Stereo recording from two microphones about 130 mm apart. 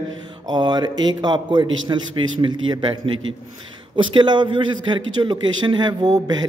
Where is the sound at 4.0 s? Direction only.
40° right (ahead or behind).